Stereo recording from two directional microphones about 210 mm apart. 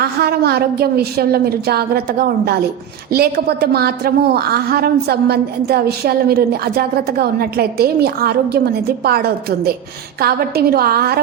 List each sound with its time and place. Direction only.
0.0 s a woman's voice: 50° right (ahead or behind)